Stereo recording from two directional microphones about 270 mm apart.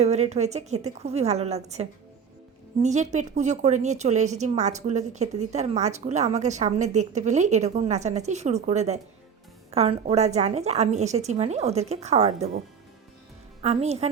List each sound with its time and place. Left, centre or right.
0.0 s a woman's voice: right
13.6 s a woman's voice: right